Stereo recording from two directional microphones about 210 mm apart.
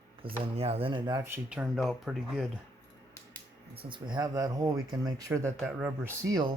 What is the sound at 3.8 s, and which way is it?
Speech, 20° right (ahead or behind).